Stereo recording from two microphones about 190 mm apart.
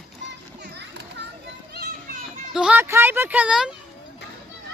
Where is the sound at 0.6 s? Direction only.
65° right (ahead or behind).